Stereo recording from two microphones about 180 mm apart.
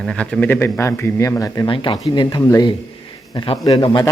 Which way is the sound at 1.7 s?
30° left (ahead or behind).